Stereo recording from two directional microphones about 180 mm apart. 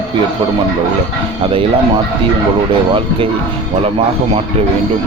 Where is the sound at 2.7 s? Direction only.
30° right (ahead or behind).